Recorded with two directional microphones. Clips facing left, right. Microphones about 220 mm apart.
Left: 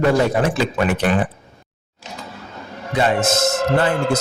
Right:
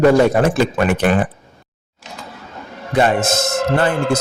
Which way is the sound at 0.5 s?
50° right (ahead or behind).